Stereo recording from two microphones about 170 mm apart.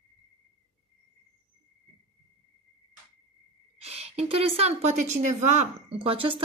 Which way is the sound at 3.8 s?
35° right (ahead or behind).